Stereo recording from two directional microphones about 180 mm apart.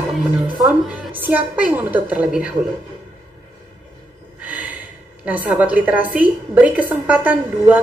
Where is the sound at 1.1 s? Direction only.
10° right (ahead or behind).